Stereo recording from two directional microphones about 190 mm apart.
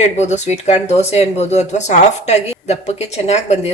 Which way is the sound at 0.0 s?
35° left (ahead or behind).